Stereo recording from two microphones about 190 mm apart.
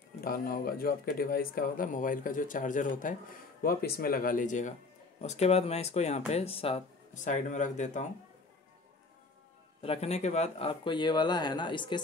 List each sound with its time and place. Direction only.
0.2 s speech: 50° left (ahead or behind)
9.8 s speech: 30° left (ahead or behind)